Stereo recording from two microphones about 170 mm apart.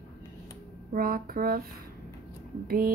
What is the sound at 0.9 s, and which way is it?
Speech, 60° right (ahead or behind).